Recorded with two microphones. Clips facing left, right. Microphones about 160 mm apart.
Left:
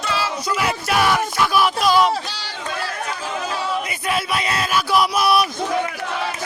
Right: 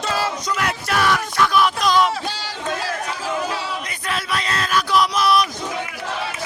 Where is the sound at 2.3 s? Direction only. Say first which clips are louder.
Right 3 dB; 45° right (ahead or behind).